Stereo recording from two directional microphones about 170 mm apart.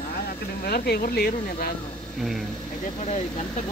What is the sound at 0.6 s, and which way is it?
Speech, 65° left (ahead or behind).